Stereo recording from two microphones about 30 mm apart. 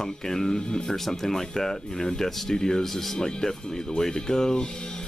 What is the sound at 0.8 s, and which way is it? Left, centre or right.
Speech, centre.